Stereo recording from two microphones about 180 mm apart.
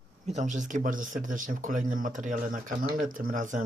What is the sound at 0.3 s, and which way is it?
Speech, 40° right (ahead or behind).